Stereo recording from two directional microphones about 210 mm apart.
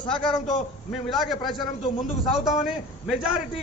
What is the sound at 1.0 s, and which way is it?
Speech, centre (ahead or behind).